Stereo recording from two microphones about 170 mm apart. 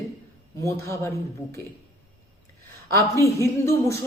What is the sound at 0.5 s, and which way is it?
Speech, 15° left (ahead or behind).